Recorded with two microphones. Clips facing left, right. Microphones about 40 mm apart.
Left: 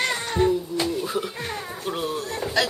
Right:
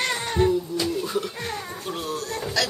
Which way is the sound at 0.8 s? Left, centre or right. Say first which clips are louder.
Even; centre.